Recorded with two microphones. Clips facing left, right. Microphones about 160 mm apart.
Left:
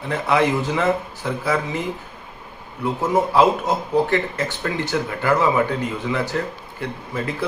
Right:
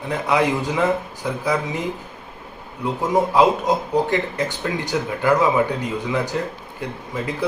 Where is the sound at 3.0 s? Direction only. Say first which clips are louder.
Even; 15° right (ahead or behind).